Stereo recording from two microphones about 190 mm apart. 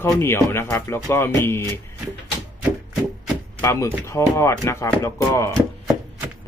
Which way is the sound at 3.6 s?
15° left (ahead or behind).